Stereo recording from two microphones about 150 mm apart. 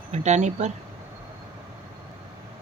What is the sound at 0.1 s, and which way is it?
Speech, 50° right (ahead or behind).